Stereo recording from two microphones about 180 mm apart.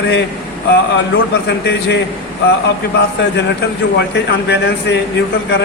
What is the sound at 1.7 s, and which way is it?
Speech, 70° left (ahead or behind).